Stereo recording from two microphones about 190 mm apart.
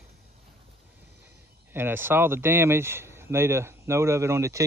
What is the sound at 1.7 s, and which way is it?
Speech, 10° right (ahead or behind).